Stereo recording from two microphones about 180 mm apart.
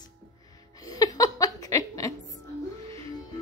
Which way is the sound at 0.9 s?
20° left (ahead or behind).